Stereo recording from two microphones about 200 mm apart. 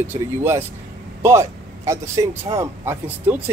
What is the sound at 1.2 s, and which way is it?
Speech, 15° right (ahead or behind).